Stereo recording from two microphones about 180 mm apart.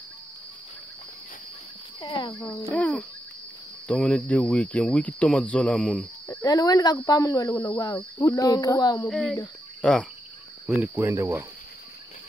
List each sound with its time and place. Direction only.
2.0 s speech: 20° left (ahead or behind)
2.6 s cricket: 10° left (ahead or behind)
6.3 s speech: 20° left (ahead or behind)
9.1 s speech: centre (ahead or behind)
9.8 s cricket: 5° left (ahead or behind)
10.8 s speech: 15° right (ahead or behind)